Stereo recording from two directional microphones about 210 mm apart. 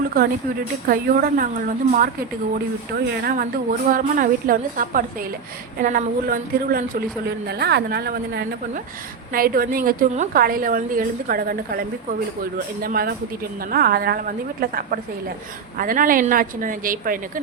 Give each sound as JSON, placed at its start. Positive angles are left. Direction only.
{"t": 0.9, "sound": "a woman's voice", "side_deg": -45}